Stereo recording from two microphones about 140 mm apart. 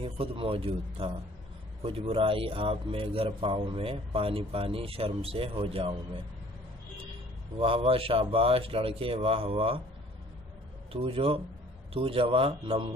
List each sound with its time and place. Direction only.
0.0 s a man's voice: 40° right (ahead or behind)
7.5 s a man's voice: 40° right (ahead or behind)
10.9 s a man's voice: 40° right (ahead or behind)